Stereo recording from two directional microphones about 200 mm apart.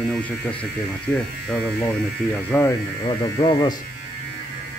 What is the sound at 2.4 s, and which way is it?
Speech, 10° left (ahead or behind).